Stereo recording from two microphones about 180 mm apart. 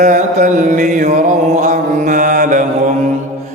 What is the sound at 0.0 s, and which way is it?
Mantra, 45° right (ahead or behind).